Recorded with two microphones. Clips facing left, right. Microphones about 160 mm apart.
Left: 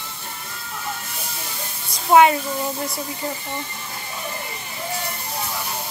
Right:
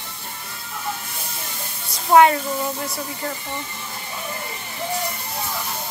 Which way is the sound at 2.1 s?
15° left (ahead or behind).